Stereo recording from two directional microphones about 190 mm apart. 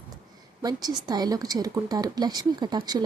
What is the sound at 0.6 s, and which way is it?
A woman's voice, 20° right (ahead or behind).